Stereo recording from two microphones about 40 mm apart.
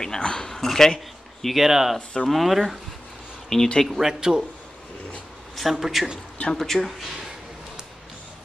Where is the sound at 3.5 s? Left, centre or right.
Centre.